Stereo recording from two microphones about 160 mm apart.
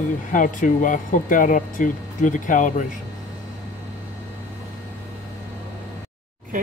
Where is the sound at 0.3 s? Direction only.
55° left (ahead or behind).